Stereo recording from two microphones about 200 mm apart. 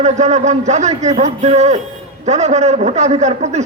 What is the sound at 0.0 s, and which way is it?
A man's voice, 35° right (ahead or behind).